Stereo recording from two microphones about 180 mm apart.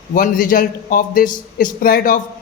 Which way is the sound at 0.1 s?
50° left (ahead or behind).